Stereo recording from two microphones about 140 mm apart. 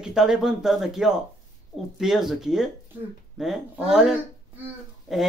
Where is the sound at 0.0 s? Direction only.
5° right (ahead or behind).